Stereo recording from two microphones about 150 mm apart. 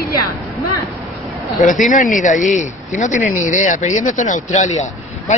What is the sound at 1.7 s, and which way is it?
A man's voice, 60° left (ahead or behind).